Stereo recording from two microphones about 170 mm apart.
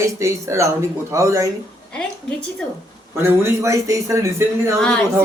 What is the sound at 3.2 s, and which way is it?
Speech, 20° right (ahead or behind).